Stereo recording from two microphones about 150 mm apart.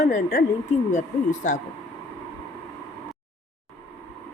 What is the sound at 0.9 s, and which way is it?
Speech, 55° left (ahead or behind).